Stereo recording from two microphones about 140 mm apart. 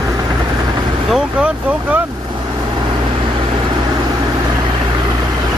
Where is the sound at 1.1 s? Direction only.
10° right (ahead or behind).